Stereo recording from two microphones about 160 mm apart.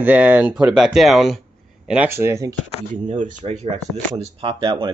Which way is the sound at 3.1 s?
45° right (ahead or behind).